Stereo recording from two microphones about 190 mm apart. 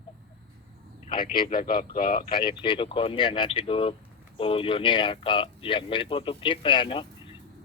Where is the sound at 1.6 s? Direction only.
50° left (ahead or behind).